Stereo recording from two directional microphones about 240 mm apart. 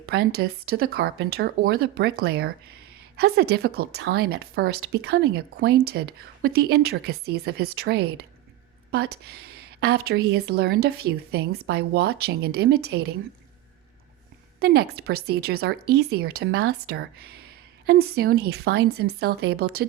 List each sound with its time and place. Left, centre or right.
0.0 s a woman's voice: right
14.6 s a woman's voice: right